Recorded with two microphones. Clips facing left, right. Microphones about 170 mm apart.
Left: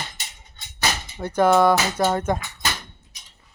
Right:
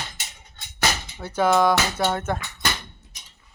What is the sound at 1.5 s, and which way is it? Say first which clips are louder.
Speech: left 2 dB; 10° left (ahead or behind).